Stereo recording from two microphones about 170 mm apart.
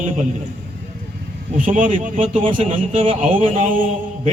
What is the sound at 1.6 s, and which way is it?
Speech, 50° right (ahead or behind).